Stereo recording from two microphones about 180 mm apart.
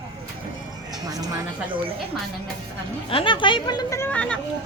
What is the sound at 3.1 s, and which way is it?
Speech, 30° left (ahead or behind).